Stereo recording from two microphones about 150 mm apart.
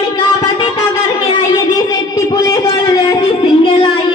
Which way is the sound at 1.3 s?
25° left (ahead or behind).